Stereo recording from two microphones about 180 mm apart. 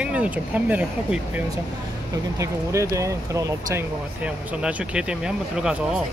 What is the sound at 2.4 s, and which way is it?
Speech, 15° right (ahead or behind).